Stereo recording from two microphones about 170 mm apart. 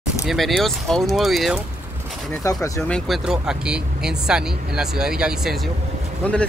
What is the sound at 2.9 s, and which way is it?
Speech, centre (ahead or behind).